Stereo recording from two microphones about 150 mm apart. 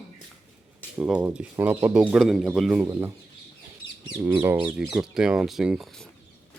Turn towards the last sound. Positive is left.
turn(degrees=0)  # may be behind; listen again after turning